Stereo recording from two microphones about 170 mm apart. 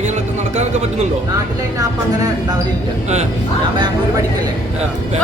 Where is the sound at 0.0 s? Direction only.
45° right (ahead or behind).